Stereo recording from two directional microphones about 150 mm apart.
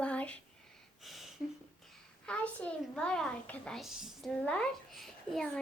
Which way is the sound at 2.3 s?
10° left (ahead or behind).